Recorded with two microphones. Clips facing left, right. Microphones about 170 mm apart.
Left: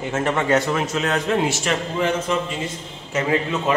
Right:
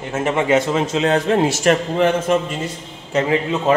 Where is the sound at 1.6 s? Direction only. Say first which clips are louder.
Right 7 dB; 55° right (ahead or behind).